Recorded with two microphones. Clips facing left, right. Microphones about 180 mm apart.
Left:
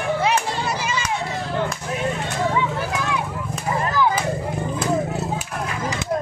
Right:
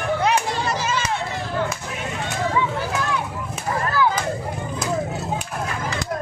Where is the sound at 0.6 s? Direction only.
10° left (ahead or behind).